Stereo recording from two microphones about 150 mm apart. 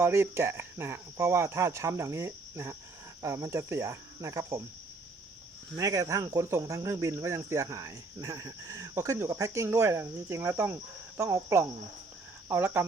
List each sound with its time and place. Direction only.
0.0 s speech: 15° right (ahead or behind)
5.7 s speech: 20° right (ahead or behind)